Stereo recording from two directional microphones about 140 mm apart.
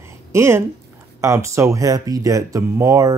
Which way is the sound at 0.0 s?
20° right (ahead or behind).